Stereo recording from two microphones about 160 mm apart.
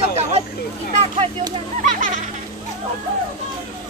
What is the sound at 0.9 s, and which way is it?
Speech, 40° right (ahead or behind).